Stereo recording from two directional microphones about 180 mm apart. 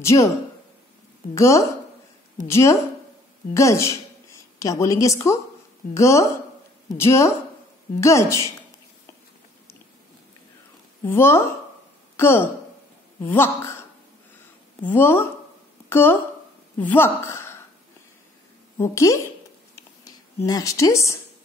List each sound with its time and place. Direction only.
0.0 s speech: 15° left (ahead or behind)
1.3 s a woman's voice: 15° left (ahead or behind)
11.1 s speech: 15° left (ahead or behind)
14.9 s a woman's voice: 10° left (ahead or behind)
18.8 s speech: 15° left (ahead or behind)
20.4 s speech: 20° left (ahead or behind)